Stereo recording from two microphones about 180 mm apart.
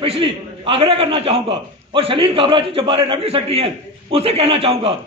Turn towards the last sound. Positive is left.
turn(degrees=-30)  # may be behind; listen again after turning